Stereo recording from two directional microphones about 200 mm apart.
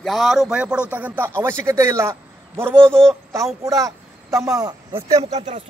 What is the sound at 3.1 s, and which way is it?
Speech, 15° right (ahead or behind).